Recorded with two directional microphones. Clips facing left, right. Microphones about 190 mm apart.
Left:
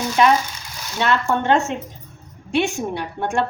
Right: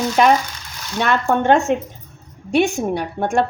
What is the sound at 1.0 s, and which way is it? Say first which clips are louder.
A woman's voice: right 3 dB; 50° right (ahead or behind).